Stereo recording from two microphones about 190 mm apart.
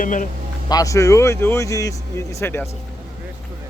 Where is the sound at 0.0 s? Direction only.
45° left (ahead or behind).